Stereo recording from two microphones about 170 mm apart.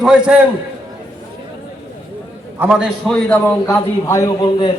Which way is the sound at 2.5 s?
10° right (ahead or behind).